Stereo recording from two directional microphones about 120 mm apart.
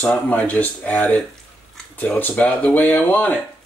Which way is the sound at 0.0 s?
10° left (ahead or behind).